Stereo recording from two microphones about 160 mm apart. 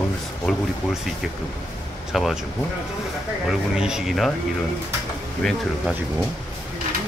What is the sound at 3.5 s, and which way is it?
Speech, 5° right (ahead or behind).